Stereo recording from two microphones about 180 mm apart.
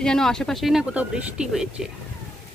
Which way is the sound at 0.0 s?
5° left (ahead or behind).